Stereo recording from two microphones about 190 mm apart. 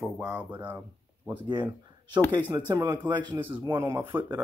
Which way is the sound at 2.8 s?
10° right (ahead or behind).